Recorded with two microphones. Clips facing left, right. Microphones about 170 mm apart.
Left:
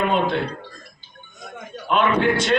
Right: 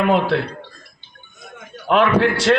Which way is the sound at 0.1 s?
80° right.